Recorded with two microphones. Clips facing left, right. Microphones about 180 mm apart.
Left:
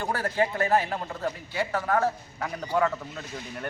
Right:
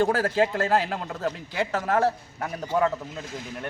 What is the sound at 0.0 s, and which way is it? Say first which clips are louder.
Speech: right 5 dB; 90° right.